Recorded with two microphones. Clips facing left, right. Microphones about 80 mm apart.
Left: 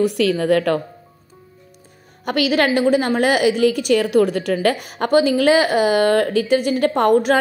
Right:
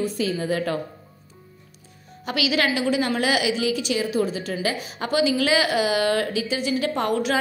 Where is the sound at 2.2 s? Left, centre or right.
Left.